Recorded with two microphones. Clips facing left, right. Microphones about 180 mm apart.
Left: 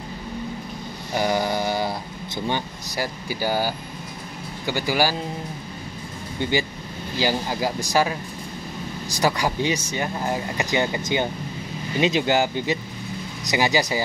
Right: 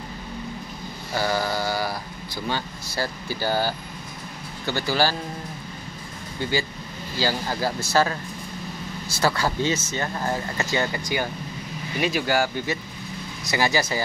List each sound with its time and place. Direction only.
1.1 s speech: 20° left (ahead or behind)
7.2 s speech: 15° left (ahead or behind)